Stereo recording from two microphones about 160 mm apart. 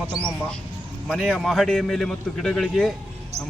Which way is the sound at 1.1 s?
5° right (ahead or behind).